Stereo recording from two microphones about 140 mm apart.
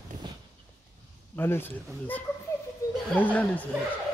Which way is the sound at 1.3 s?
15° left (ahead or behind).